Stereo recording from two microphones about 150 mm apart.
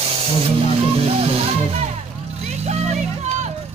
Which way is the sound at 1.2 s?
40° right (ahead or behind).